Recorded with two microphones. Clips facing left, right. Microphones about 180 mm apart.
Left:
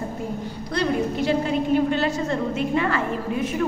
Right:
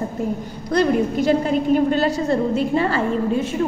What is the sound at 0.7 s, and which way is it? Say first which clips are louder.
A woman's voice: right 6 dB; 45° right (ahead or behind).